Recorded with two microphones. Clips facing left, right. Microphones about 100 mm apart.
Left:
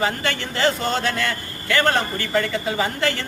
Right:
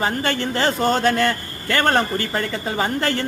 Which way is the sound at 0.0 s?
40° right (ahead or behind).